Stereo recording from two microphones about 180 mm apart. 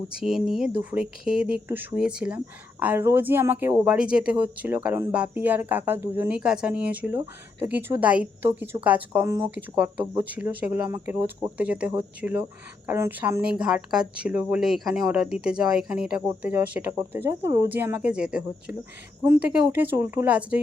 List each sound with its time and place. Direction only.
0.2 s speech: centre (ahead or behind)